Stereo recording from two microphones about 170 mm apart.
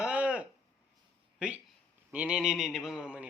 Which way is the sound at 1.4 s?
5° right (ahead or behind).